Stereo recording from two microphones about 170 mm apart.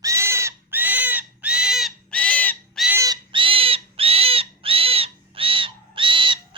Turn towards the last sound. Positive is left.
turn(degrees=-30)  # may be behind; listen again after turning